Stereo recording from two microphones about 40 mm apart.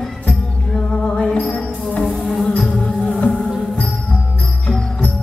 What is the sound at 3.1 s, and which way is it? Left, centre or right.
Music, left.